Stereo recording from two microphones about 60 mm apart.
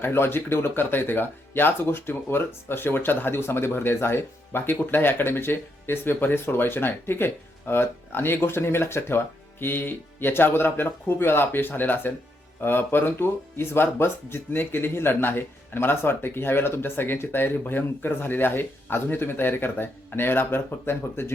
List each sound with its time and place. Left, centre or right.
0.0 s speech: left